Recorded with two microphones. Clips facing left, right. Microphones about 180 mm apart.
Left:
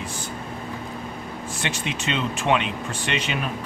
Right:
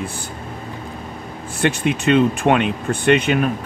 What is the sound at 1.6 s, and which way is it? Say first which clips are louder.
Speech: right 12 dB; 55° right (ahead or behind).